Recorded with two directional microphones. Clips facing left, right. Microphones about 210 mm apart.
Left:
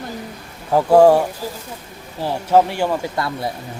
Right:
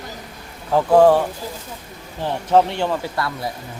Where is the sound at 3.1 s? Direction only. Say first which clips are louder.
Left 2 dB; 25° left (ahead or behind).